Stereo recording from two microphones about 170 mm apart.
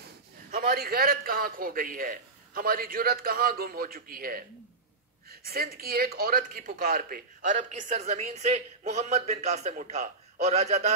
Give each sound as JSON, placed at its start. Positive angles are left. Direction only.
{"t": 0.5, "sound": "a man's voice", "side_deg": -60}
{"t": 7.5, "sound": "a man's voice", "side_deg": -45}